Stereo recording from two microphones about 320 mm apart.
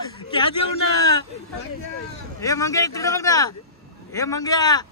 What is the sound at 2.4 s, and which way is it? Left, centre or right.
A man's voice, centre.